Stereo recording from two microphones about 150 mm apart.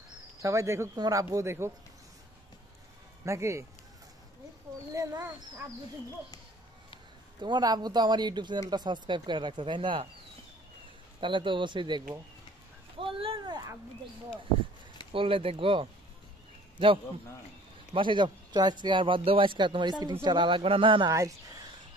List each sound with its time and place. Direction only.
0.4 s speech: 20° right (ahead or behind)
3.3 s speech: 20° right (ahead or behind)
4.9 s speech: 20° right (ahead or behind)
7.3 s speech: 30° right (ahead or behind)
11.1 s speech: 35° right (ahead or behind)
12.9 s a sound: 35° right (ahead or behind)
15.1 s speech: 35° right (ahead or behind)
17.9 s speech: 35° right (ahead or behind)
21.1 s speech: 20° right (ahead or behind)